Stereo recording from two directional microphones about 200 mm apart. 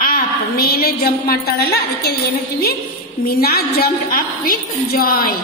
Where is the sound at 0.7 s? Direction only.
50° left (ahead or behind).